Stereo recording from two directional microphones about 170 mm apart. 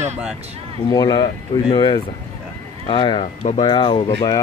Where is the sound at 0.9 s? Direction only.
20° left (ahead or behind).